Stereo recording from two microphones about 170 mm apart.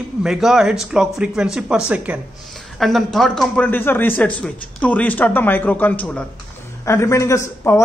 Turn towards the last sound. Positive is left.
turn(degrees=15)  # may be behind; listen again after turning